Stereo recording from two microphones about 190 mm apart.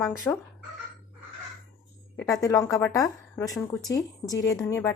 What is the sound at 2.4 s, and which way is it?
A woman's voice, 15° left (ahead or behind).